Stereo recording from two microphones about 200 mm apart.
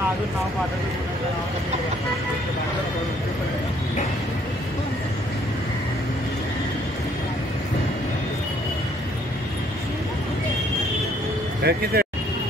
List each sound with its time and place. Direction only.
11.6 s speech: 50° right (ahead or behind)